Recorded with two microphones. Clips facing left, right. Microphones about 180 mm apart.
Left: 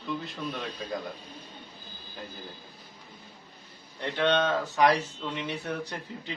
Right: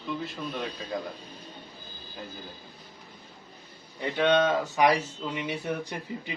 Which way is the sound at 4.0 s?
10° right (ahead or behind).